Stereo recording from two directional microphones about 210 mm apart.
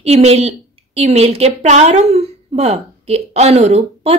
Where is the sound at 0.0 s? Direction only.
30° right (ahead or behind).